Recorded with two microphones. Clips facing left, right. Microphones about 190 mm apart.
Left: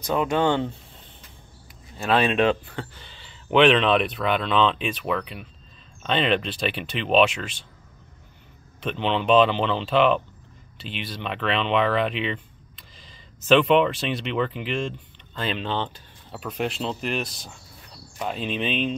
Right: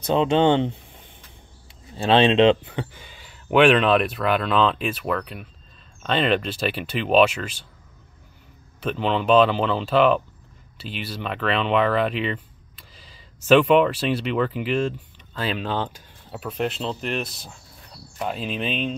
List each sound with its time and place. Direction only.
0.0 s speech: 25° right (ahead or behind); by 7.6 s 5° right (ahead or behind)
8.8 s speech: 5° right (ahead or behind)